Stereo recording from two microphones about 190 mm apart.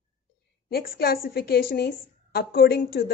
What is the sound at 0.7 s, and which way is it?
A woman's voice, 55° left (ahead or behind).